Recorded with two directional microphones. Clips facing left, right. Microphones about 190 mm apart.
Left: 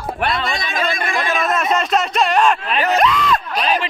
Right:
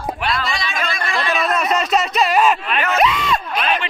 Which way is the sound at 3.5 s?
35° left (ahead or behind).